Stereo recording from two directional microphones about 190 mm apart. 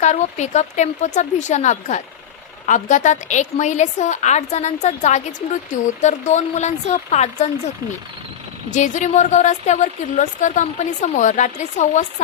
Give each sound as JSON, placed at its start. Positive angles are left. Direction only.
{"t": 0.0, "sound": "speech", "side_deg": 40}
{"t": 8.7, "sound": "speech", "side_deg": 40}